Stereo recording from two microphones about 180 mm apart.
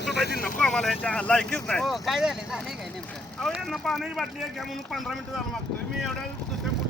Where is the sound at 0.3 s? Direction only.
55° left (ahead or behind).